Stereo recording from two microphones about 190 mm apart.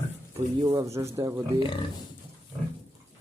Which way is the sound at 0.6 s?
20° right (ahead or behind).